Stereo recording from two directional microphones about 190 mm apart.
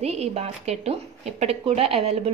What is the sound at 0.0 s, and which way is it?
A woman's voice, 35° right (ahead or behind).